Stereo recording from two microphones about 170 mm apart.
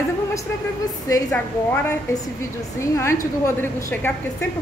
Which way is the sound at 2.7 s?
15° left (ahead or behind).